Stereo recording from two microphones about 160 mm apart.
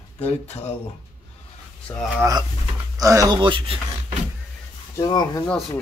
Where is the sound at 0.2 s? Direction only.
45° left (ahead or behind).